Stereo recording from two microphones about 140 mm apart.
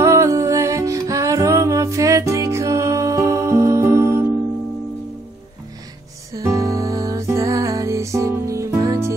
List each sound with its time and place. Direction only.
0.0 s music: 20° right (ahead or behind)
6.3 s music: 20° right (ahead or behind)